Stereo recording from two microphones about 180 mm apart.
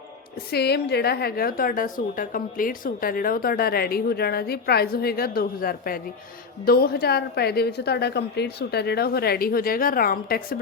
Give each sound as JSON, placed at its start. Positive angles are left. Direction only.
{"t": 0.5, "sound": "a woman's voice", "side_deg": 65}